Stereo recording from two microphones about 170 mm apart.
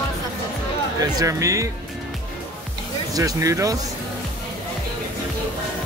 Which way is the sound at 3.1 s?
20° right (ahead or behind).